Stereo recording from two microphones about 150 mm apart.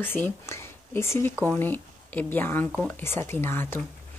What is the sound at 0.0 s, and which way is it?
Speech, 15° left (ahead or behind).